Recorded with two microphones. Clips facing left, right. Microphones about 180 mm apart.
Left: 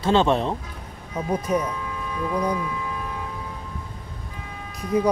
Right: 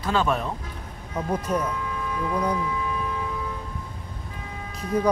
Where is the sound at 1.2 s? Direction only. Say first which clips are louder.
Left 2 dB; 10° left (ahead or behind).